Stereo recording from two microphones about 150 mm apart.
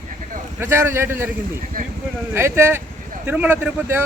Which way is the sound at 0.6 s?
15° right (ahead or behind).